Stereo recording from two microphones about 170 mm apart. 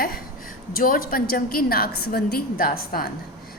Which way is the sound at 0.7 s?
55° left (ahead or behind).